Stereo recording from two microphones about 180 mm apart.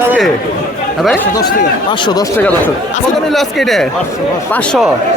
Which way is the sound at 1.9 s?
25° left (ahead or behind).